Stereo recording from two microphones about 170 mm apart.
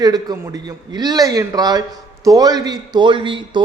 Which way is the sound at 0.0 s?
25° right (ahead or behind).